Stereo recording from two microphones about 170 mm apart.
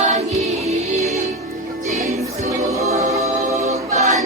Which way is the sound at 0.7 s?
40° right (ahead or behind).